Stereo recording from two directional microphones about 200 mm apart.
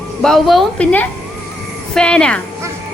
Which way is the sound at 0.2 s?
Centre (ahead or behind).